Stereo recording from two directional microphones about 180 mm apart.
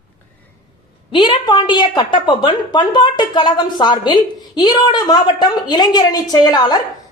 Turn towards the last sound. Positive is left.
turn(degrees=25)  # may be behind; listen again after turning